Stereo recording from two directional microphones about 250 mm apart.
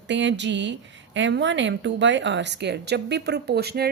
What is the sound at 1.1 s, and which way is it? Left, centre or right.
A woman's voice, right.